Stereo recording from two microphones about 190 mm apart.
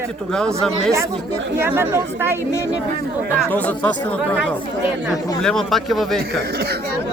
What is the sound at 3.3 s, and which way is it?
Speech, 5° left (ahead or behind).